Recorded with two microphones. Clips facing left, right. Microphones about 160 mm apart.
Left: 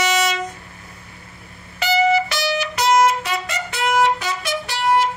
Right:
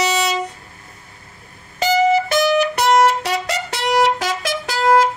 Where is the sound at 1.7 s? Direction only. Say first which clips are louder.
Right 2 dB; 45° right (ahead or behind); by 5.0 s 90° right.